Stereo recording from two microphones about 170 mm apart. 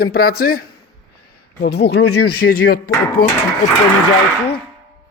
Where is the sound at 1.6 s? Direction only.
75° left (ahead or behind).